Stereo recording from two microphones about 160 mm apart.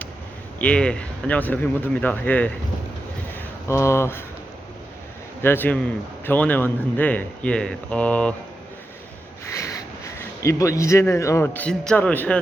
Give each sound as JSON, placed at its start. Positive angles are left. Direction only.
{"t": 0.6, "sound": "a man's voice", "side_deg": 5}
{"t": 3.3, "sound": "a sound", "side_deg": 15}
{"t": 5.4, "sound": "a man's voice", "side_deg": 15}
{"t": 10.4, "sound": "a man's voice", "side_deg": 20}